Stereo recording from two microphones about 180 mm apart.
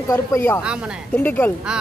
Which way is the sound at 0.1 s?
15° left (ahead or behind).